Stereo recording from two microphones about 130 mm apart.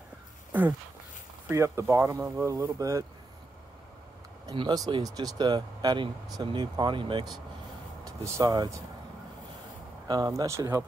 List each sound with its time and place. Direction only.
0.5 s a sound: 15° right (ahead or behind)
1.5 s speech: 20° right (ahead or behind)
4.5 s speech: 35° right (ahead or behind)
8.0 s speech: 25° right (ahead or behind)
10.0 s speech: 30° right (ahead or behind)